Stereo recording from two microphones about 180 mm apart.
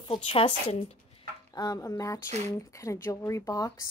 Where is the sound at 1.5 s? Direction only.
20° left (ahead or behind).